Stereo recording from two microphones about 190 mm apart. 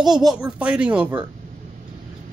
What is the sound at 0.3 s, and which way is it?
Speech, 5° right (ahead or behind).